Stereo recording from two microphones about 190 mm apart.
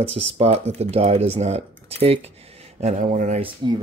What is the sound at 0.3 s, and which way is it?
Speech, 35° right (ahead or behind).